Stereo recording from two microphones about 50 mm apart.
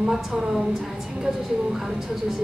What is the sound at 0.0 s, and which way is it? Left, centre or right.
Speech, centre.